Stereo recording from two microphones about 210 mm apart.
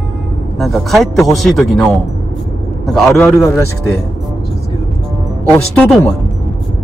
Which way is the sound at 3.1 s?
15° left (ahead or behind).